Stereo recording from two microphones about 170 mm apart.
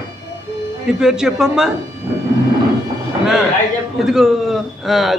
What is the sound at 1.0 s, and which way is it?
Speech, 5° right (ahead or behind).